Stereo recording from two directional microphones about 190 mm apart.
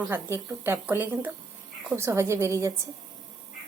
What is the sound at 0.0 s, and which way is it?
Speech, 10° right (ahead or behind).